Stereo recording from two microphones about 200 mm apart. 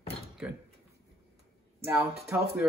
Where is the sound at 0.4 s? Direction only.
5° right (ahead or behind).